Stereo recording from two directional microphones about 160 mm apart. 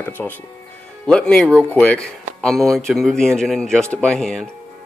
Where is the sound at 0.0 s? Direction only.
10° left (ahead or behind).